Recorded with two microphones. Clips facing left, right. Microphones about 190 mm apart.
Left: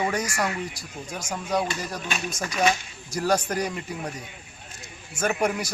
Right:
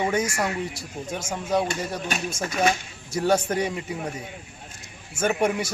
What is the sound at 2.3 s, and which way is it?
Speech, 25° right (ahead or behind).